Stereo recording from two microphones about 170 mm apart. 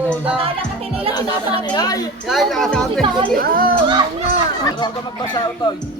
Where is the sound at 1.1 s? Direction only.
25° left (ahead or behind).